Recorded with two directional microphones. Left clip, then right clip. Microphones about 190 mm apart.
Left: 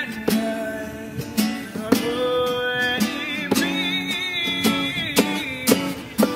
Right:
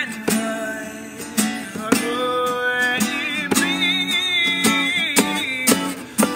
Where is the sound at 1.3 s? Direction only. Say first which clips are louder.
Right 2 dB; 10° right (ahead or behind).